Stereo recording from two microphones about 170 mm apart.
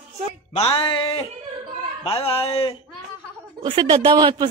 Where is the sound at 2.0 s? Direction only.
35° left (ahead or behind).